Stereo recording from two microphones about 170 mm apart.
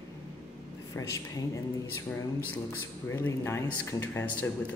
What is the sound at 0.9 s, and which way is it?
Speech, 20° left (ahead or behind).